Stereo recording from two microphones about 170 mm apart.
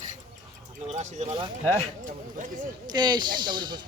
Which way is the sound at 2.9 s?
25° right (ahead or behind).